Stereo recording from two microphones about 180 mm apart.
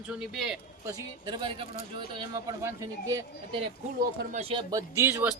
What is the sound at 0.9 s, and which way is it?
Speech, 25° right (ahead or behind).